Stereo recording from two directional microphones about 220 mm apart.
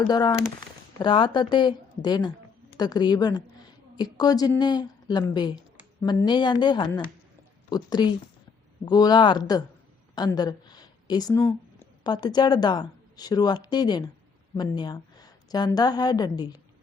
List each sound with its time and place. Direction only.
0.1 s a woman's voice: 20° left (ahead or behind)